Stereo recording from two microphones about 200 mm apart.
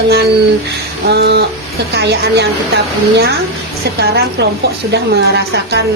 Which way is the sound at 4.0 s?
55° right (ahead or behind).